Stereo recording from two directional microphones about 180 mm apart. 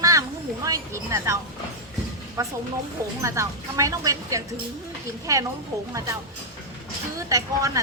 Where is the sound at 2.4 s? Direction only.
20° right (ahead or behind).